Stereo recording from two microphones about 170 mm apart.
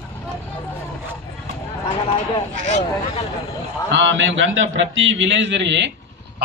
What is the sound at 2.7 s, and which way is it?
Speech, 40° left (ahead or behind).